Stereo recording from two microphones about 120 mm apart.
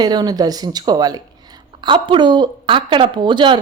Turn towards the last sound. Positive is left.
turn(degrees=-40)  # may be behind; listen again after turning